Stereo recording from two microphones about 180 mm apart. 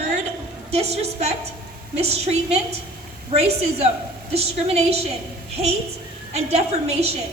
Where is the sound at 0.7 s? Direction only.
35° right (ahead or behind).